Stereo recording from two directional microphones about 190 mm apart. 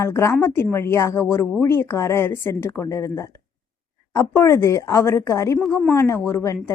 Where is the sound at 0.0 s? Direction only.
15° left (ahead or behind).